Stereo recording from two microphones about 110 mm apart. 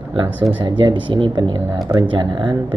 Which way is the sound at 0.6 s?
45° right (ahead or behind).